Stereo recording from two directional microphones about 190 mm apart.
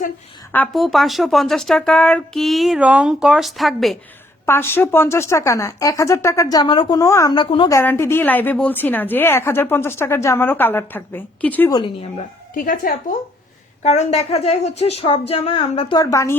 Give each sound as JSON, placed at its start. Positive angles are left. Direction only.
{"t": 0.5, "sound": "speech", "side_deg": 5}
{"t": 4.4, "sound": "a woman's voice", "side_deg": 10}
{"t": 7.8, "sound": "a woman's voice", "side_deg": 15}
{"t": 11.7, "sound": "speech", "side_deg": 25}
{"t": 12.5, "sound": "a woman's voice", "side_deg": 45}